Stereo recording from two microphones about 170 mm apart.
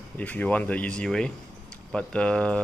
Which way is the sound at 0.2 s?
10° left (ahead or behind).